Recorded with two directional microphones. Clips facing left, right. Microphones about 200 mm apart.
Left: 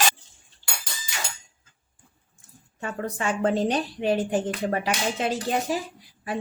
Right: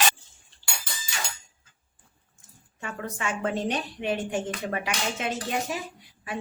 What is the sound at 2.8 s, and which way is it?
Dishes, 35° left (ahead or behind).